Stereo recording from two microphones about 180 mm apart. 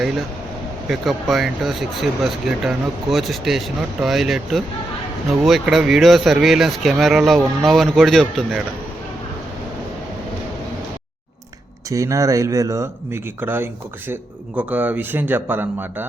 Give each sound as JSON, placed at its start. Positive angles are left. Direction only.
{"t": 0.9, "sound": "speech", "side_deg": 0}
{"t": 11.9, "sound": "speech", "side_deg": -20}